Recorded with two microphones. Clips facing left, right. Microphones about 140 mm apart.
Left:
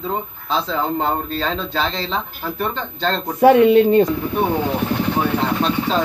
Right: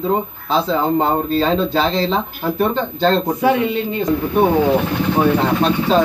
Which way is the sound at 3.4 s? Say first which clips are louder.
Left 6 dB; 55° left (ahead or behind).